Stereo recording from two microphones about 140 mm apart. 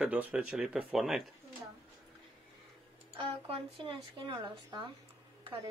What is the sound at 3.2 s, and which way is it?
Speech, 45° right (ahead or behind).